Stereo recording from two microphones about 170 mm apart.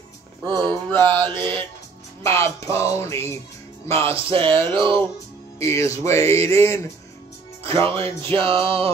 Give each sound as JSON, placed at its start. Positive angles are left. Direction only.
{"t": 0.5, "sound": "music", "side_deg": -25}
{"t": 0.8, "sound": "music", "side_deg": 10}
{"t": 1.1, "sound": "music", "side_deg": -30}
{"t": 2.2, "sound": "music", "side_deg": 15}
{"t": 4.1, "sound": "music", "side_deg": -30}
{"t": 5.6, "sound": "music", "side_deg": 15}
{"t": 7.6, "sound": "speech", "side_deg": -30}
{"t": 8.0, "sound": "music", "side_deg": 15}
{"t": 8.3, "sound": "music", "side_deg": -30}